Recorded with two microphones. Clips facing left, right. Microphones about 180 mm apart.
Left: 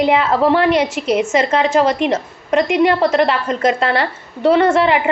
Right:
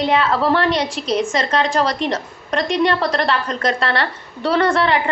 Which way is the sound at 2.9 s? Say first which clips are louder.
Left 4 dB; 20° left (ahead or behind).